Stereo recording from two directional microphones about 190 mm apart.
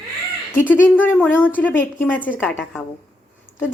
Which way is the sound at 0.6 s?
10° left (ahead or behind).